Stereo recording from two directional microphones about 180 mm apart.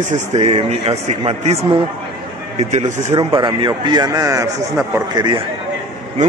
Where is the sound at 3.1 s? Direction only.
25° right (ahead or behind).